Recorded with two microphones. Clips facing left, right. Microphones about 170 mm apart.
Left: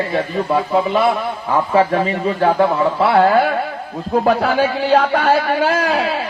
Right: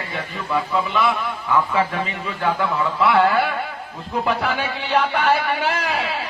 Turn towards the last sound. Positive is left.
turn(degrees=40)  # may be behind; listen again after turning